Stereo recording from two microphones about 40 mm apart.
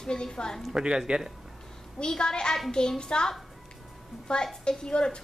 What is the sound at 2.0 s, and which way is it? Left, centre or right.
A woman's voice, centre.